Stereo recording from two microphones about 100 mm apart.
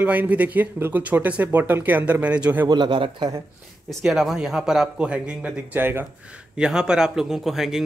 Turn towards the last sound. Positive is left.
turn(degrees=-5)  # may be behind; listen again after turning